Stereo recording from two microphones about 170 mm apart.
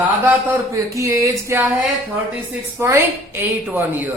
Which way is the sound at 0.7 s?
15° right (ahead or behind).